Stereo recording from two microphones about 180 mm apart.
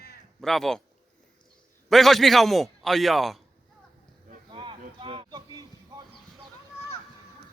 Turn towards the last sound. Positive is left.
turn(degrees=-20)  # may be behind; listen again after turning